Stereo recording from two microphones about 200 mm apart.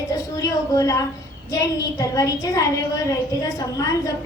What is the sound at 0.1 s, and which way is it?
A woman's voice, 15° left (ahead or behind).